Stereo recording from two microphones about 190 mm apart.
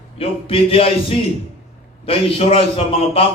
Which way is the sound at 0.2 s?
30° left (ahead or behind).